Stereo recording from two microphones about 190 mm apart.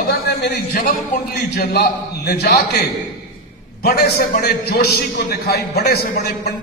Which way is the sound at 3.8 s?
55° left (ahead or behind).